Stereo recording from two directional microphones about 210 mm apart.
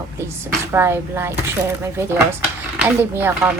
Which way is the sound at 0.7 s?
10° right (ahead or behind).